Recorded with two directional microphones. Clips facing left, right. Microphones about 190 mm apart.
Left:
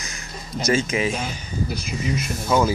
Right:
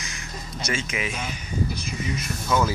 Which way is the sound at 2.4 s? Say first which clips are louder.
Left 4 dB; 25° left (ahead or behind).